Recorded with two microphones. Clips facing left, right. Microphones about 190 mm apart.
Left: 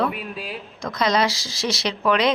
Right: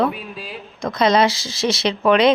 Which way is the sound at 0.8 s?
25° right (ahead or behind).